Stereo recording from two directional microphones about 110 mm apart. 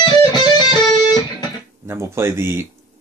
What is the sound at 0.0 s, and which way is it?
Music, 40° left (ahead or behind).